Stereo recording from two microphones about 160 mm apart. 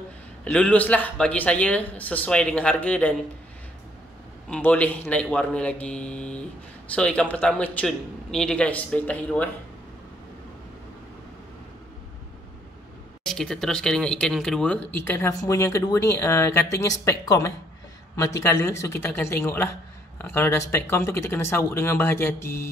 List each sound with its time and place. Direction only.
0.5 s speech: 5° left (ahead or behind)
4.5 s speech: 10° left (ahead or behind)
13.2 s speech: 5° left (ahead or behind)